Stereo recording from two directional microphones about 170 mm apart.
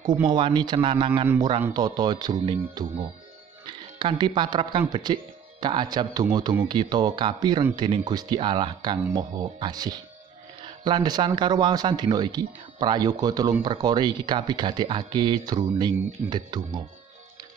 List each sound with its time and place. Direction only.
0.0 s speech: 25° right (ahead or behind)